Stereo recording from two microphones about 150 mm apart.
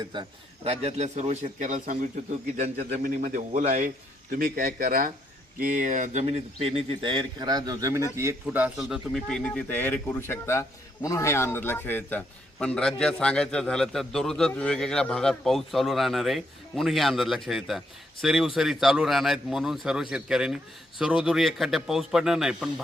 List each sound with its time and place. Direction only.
0.0 s a man's voice: 30° right (ahead or behind); by 2.0 s 60° right (ahead or behind)
2.6 s a man's voice: 50° right (ahead or behind)
3.0 s a man's voice: 70° right (ahead or behind); by 3.9 s 55° right (ahead or behind)
4.4 s speech: 70° right (ahead or behind); by 22.7 s 5° right (ahead or behind)